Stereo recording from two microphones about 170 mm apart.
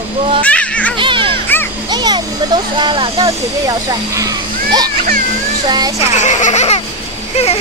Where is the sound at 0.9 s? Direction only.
30° right (ahead or behind).